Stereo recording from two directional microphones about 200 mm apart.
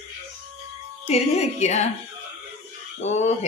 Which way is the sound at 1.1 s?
35° left (ahead or behind).